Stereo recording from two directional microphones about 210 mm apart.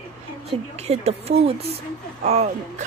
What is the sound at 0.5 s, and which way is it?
A woman's voice, 30° right (ahead or behind).